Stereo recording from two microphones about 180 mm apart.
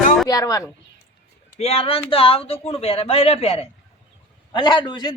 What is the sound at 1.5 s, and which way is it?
A man's voice, 35° left (ahead or behind).